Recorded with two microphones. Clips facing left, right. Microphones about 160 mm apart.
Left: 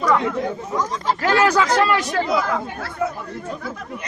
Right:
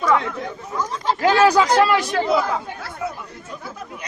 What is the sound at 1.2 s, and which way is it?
Speech, 15° right (ahead or behind).